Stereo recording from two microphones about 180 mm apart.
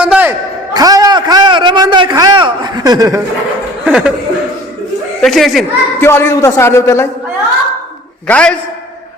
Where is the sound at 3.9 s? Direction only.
5° right (ahead or behind).